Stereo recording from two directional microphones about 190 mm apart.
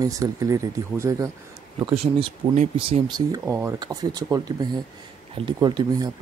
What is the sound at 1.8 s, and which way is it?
Speech, 30° right (ahead or behind).